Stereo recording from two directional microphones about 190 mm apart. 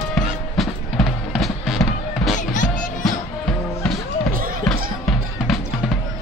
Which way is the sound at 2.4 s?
40° left (ahead or behind).